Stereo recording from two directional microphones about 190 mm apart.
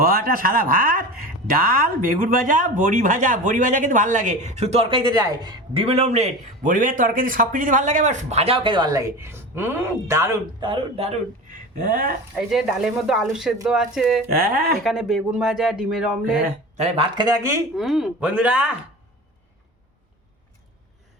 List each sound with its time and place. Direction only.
0.0 s speech: 50° right (ahead or behind); by 11.2 s 30° right (ahead or behind)
11.8 s speech: 50° right (ahead or behind)
12.4 s speech: centre (ahead or behind)
14.3 s speech: 50° right (ahead or behind)
14.8 s speech: centre (ahead or behind)
16.7 s speech: 35° right (ahead or behind); by 17.6 s 20° right (ahead or behind)
17.7 s speech: centre (ahead or behind)